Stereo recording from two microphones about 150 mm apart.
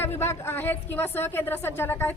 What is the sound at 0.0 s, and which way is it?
A woman's voice, 15° left (ahead or behind).